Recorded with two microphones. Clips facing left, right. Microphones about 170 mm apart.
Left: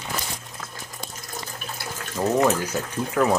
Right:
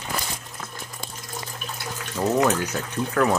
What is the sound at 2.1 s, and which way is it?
Water, 10° left (ahead or behind).